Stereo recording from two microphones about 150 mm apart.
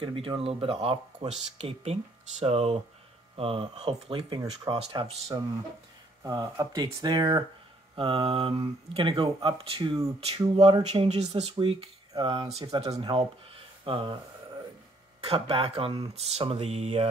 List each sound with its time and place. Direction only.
0.0 s speech: 35° right (ahead or behind)
15.2 s speech: 40° right (ahead or behind)